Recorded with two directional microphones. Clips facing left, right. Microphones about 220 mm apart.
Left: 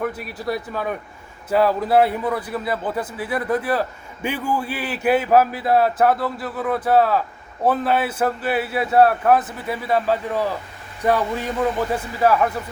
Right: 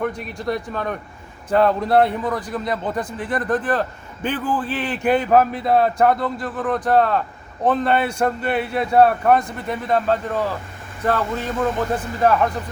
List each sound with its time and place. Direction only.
0.0 s a man's voice: 5° left (ahead or behind)